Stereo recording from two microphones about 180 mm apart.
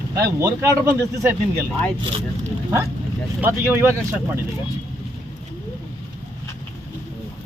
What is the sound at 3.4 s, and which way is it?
Speech, 15° right (ahead or behind).